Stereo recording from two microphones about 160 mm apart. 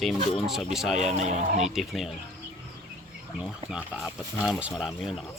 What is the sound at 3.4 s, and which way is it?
Speech, 5° right (ahead or behind).